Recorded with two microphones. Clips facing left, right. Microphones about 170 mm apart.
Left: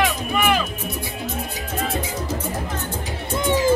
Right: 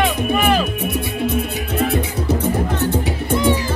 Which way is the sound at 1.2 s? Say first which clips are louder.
Right 8 dB; 60° right (ahead or behind).